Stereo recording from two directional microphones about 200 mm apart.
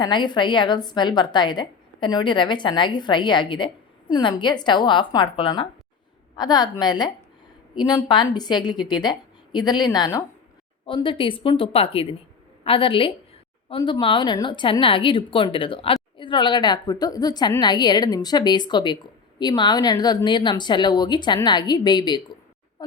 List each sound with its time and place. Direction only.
0.0 s a woman's voice: 20° left (ahead or behind)